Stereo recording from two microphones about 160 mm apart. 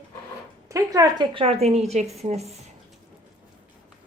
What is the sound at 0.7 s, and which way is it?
A woman's voice, 20° right (ahead or behind).